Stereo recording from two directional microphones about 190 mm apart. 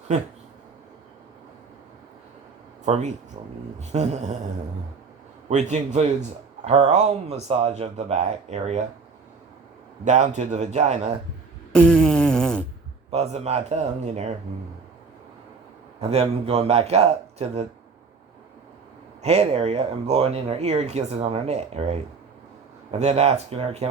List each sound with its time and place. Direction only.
2.8 s speech: 35° right (ahead or behind)
5.5 s speech: 35° right (ahead or behind)
10.0 s speech: 40° right (ahead or behind)
11.7 s a sound: 5° left (ahead or behind)
13.1 s speech: 35° right (ahead or behind)
16.0 s speech: 35° right (ahead or behind)
19.2 s speech: 35° right (ahead or behind)